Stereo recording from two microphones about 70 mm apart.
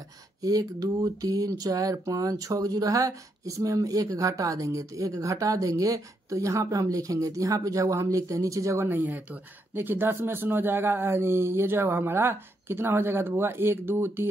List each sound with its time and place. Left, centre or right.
0.4 s speech: right
8.8 s speech: right